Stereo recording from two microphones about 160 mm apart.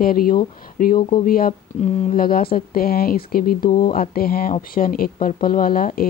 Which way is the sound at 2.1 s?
65° left (ahead or behind).